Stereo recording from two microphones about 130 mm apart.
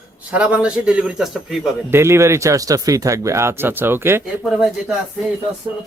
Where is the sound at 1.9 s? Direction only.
20° right (ahead or behind).